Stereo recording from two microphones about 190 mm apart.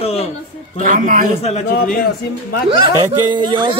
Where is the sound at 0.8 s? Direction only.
45° right (ahead or behind).